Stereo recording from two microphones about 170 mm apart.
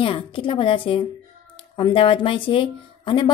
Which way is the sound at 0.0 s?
30° left (ahead or behind).